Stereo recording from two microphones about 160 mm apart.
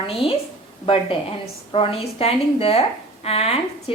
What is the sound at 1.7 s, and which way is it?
A woman's voice, 35° left (ahead or behind).